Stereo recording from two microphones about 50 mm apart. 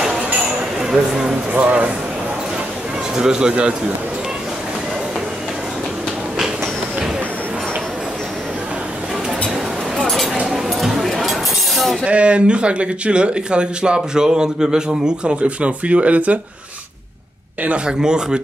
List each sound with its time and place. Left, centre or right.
0.7 s speech: centre
1.6 s speech: right
3.2 s speech: centre
10.4 s chink: centre
12.1 s speech: right
17.6 s speech: centre